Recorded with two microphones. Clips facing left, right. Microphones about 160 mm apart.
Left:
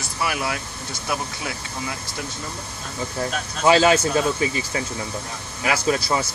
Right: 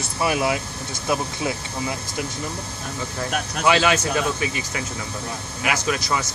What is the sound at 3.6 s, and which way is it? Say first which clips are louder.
Speech: left 3 dB; 30° left (ahead or behind).